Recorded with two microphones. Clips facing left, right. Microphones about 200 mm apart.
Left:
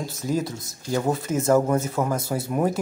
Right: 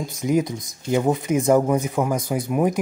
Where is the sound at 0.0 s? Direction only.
15° right (ahead or behind).